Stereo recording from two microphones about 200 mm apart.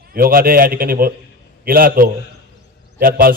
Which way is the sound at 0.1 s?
45° right (ahead or behind).